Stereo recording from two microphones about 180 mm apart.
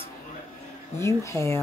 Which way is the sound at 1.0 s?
15° left (ahead or behind).